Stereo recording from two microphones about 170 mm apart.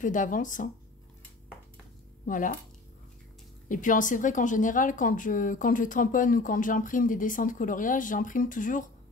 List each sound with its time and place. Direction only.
0.0 s speech: 50° left (ahead or behind)
2.2 s speech: 50° left (ahead or behind)
3.6 s speech: 50° left (ahead or behind)